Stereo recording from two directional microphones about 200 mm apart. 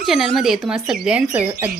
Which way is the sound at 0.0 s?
Centre (ahead or behind).